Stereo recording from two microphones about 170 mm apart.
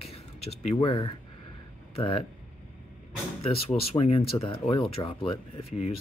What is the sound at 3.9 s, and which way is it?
Speech, 35° left (ahead or behind).